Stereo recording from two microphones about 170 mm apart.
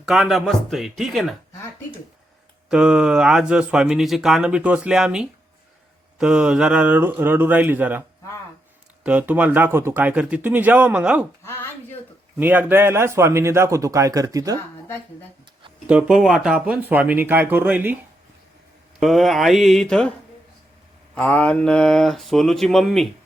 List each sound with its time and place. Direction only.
0.0 s speech: centre (ahead or behind)
2.6 s speech: 5° right (ahead or behind)
9.0 s speech: 10° right (ahead or behind)
12.4 s speech: 10° right (ahead or behind)
15.9 s speech: 5° right (ahead or behind)
21.2 s speech: 10° left (ahead or behind)